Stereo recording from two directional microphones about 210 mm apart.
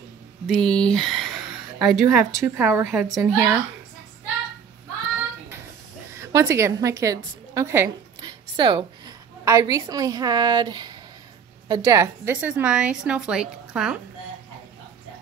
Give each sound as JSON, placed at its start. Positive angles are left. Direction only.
{"t": 0.6, "sound": "a sound", "side_deg": 5}
{"t": 2.0, "sound": "a woman's voice", "side_deg": -15}
{"t": 6.1, "sound": "a woman's voice", "side_deg": -15}